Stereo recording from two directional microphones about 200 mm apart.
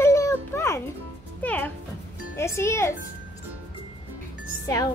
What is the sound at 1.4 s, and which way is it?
Music, 5° left (ahead or behind).